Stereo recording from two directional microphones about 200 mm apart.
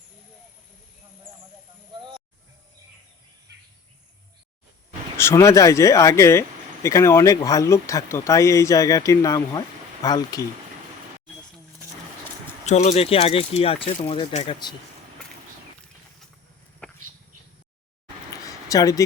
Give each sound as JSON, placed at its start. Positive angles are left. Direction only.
{"t": 1.9, "sound": "snake", "side_deg": -25}
{"t": 5.1, "sound": "speech", "side_deg": 15}
{"t": 12.6, "sound": "speech", "side_deg": 35}
{"t": 18.4, "sound": "a sound", "side_deg": 15}